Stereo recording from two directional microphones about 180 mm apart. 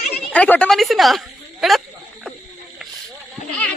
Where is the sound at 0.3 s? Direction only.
10° left (ahead or behind).